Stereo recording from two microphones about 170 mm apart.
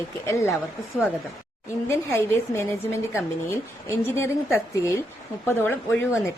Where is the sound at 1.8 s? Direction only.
15° left (ahead or behind).